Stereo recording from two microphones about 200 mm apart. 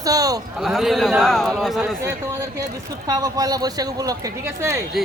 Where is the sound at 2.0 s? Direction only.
15° right (ahead or behind).